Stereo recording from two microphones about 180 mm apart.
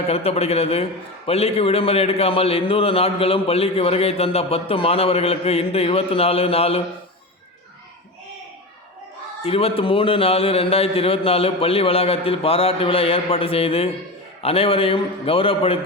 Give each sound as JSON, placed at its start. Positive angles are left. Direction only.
{"t": 0.1, "sound": "a man's voice", "side_deg": 35}
{"t": 9.4, "sound": "a man's voice", "side_deg": 30}